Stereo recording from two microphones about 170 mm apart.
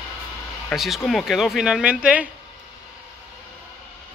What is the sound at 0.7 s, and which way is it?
Speech, centre (ahead or behind).